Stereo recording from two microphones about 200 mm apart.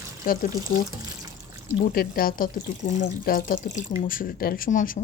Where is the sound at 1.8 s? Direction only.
50° left (ahead or behind).